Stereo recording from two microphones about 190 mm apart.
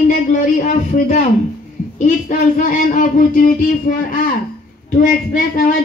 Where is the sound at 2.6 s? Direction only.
45° left (ahead or behind).